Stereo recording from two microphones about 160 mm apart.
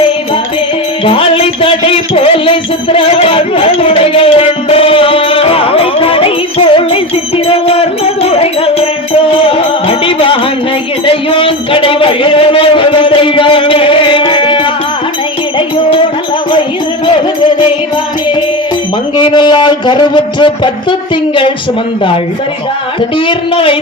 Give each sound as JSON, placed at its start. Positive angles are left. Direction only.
{"t": 1.0, "sound": "music", "side_deg": 35}
{"t": 11.0, "sound": "a sound", "side_deg": 35}
{"t": 15.5, "sound": "music", "side_deg": 30}
{"t": 19.1, "sound": "speech", "side_deg": 30}
{"t": 23.2, "sound": "speech", "side_deg": 35}